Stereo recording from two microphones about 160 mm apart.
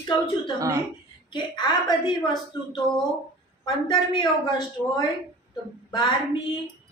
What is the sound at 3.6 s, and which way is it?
Speech, 25° left (ahead or behind).